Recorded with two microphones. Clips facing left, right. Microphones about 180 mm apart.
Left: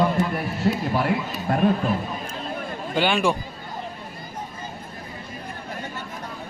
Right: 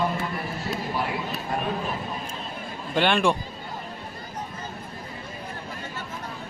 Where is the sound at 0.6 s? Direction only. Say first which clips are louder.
Left 10 dB; 55° left (ahead or behind).